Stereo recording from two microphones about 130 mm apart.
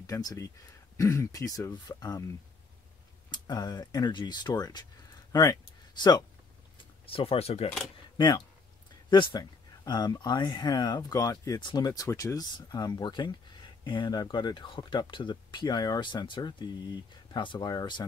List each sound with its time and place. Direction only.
0.0 s speech: 25° left (ahead or behind)
5.3 s a sound: 30° left (ahead or behind)
6.8 s speech: 45° left (ahead or behind)
9.1 s speech: 35° left (ahead or behind)